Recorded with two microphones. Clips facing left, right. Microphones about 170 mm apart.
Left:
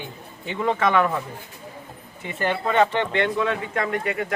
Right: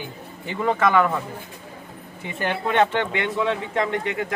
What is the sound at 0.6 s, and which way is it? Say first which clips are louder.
Speech: right 1 dB; centre (ahead or behind).